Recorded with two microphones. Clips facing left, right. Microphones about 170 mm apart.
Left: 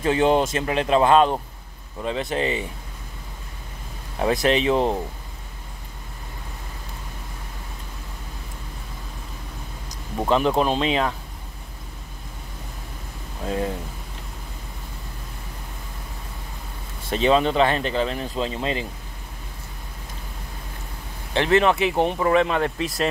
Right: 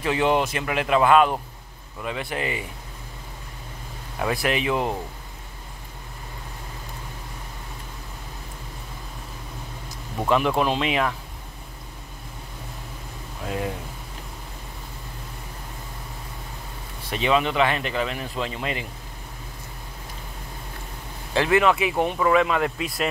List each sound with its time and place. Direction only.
0.0 s speech: 30° left (ahead or behind)
4.2 s speech: 25° left (ahead or behind)
10.2 s speech: 30° left (ahead or behind)
17.1 s speech: 35° left (ahead or behind)
21.3 s speech: 25° left (ahead or behind)